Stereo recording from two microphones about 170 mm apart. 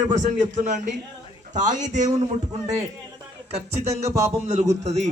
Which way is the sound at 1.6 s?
45° right (ahead or behind).